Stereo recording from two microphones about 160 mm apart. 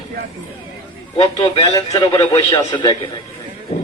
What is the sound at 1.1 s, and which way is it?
Speech, 40° left (ahead or behind).